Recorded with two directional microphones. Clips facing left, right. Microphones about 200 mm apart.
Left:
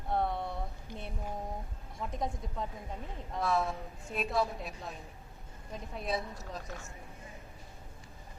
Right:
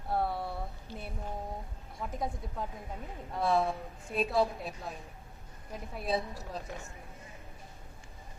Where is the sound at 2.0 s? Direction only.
5° right (ahead or behind).